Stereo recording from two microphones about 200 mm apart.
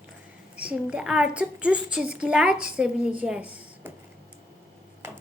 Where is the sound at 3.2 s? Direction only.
5° right (ahead or behind).